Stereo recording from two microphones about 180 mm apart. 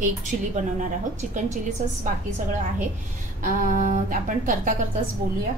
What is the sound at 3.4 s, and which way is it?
A woman's voice, 50° right (ahead or behind).